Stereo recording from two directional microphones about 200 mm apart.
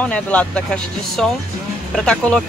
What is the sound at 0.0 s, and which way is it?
Speech, 5° left (ahead or behind).